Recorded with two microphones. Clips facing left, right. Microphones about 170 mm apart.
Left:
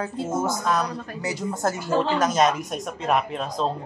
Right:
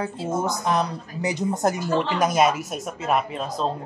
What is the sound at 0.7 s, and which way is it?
A woman's voice, 20° right (ahead or behind).